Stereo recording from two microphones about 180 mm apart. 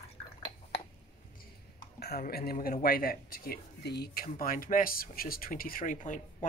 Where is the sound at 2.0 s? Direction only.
60° left (ahead or behind).